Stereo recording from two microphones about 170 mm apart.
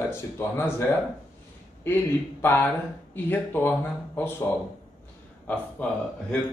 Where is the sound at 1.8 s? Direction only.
10° left (ahead or behind).